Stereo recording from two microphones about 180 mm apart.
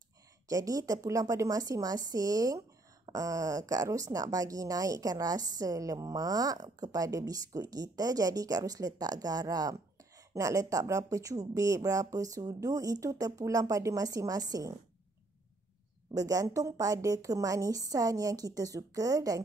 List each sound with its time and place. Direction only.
0.5 s speech: 20° right (ahead or behind)
16.1 s speech: 20° right (ahead or behind)